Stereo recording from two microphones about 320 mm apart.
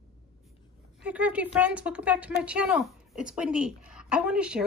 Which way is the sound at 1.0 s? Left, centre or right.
Centre.